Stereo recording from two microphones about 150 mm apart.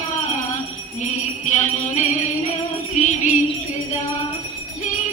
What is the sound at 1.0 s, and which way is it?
Music, 55° left (ahead or behind).